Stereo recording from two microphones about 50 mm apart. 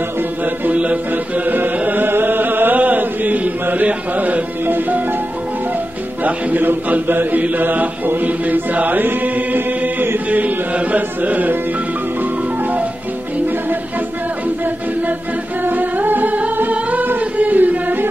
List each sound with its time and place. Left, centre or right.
0.7 s music: right
4.6 s music: right
6.2 s mantra: right
15.6 s music: right